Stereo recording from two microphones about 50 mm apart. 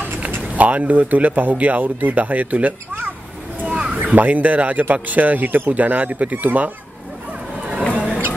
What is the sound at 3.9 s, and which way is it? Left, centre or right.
Speech, right.